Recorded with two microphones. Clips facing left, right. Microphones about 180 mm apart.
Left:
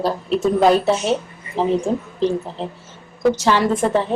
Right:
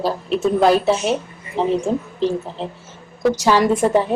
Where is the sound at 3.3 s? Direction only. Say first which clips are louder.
Right 2 dB; 10° right (ahead or behind).